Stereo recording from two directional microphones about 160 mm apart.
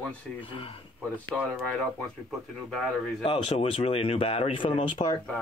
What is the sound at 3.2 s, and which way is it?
Speech, 35° left (ahead or behind).